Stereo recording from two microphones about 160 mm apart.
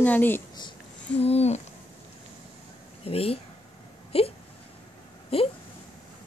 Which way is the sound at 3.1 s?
35° left (ahead or behind).